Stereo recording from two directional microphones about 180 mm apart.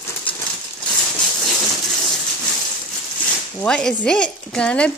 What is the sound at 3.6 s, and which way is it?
Speech, 5° left (ahead or behind).